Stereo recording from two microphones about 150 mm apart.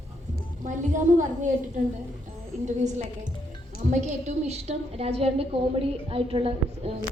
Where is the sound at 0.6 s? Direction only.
55° right (ahead or behind).